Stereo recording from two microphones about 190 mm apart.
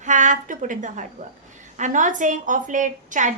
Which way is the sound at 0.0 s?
40° right (ahead or behind).